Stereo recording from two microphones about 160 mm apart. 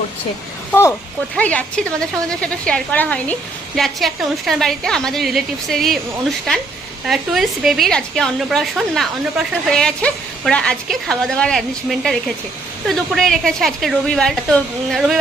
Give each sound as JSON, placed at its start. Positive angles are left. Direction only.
{"t": 0.7, "sound": "a woman's voice", "side_deg": 15}